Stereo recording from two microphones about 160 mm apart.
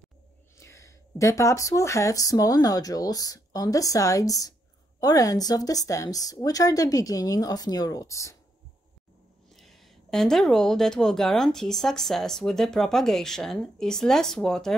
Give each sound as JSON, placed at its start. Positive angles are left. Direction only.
{"t": 0.6, "sound": "speech", "side_deg": 20}
{"t": 9.5, "sound": "speech", "side_deg": 0}